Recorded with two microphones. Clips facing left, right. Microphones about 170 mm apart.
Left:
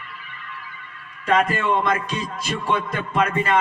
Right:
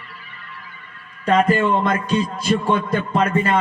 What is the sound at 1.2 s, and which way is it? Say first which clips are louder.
A man's voice: right 4 dB; 30° right (ahead or behind).